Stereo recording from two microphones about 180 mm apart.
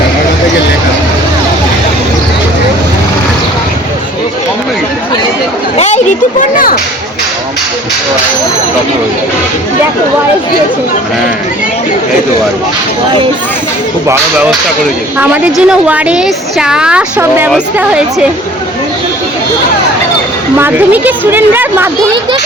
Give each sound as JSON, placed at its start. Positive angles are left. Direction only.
{"t": 5.7, "sound": "a sound", "side_deg": 40}
{"t": 15.2, "sound": "a woman's voice", "side_deg": -5}
{"t": 20.6, "sound": "a woman's voice", "side_deg": -10}